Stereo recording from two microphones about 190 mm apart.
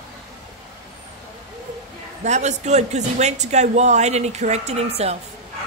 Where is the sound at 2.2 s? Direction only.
35° right (ahead or behind).